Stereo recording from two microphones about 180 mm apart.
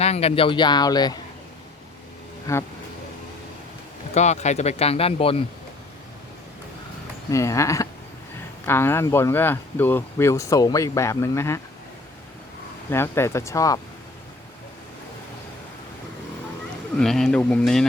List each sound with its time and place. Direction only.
0.0 s speech: 35° left (ahead or behind)
2.5 s speech: 20° left (ahead or behind)
4.1 s speech: 40° left (ahead or behind)
7.3 s speech: 15° left (ahead or behind)
12.9 s speech: 15° left (ahead or behind)
17.0 s speech: 5° left (ahead or behind)